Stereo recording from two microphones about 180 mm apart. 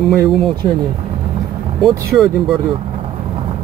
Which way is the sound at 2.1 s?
Centre (ahead or behind).